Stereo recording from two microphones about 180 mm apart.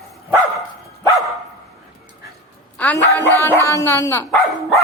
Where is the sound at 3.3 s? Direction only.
15° left (ahead or behind).